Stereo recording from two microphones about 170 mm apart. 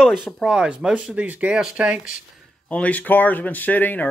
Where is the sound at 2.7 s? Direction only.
10° left (ahead or behind).